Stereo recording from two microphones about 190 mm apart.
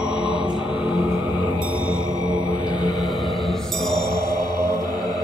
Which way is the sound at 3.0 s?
Centre (ahead or behind).